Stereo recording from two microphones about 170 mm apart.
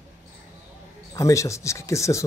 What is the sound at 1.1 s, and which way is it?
Speech, 20° left (ahead or behind).